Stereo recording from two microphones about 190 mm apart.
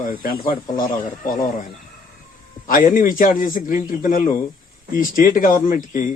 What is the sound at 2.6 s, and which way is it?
A man's voice, 45° left (ahead or behind).